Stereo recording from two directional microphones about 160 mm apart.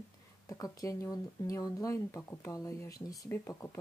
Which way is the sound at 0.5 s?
20° left (ahead or behind).